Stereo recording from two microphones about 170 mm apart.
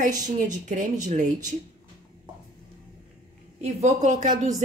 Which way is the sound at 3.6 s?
45° right (ahead or behind).